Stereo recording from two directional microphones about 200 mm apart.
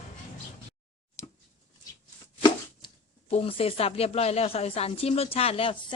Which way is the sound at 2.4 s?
25° left (ahead or behind).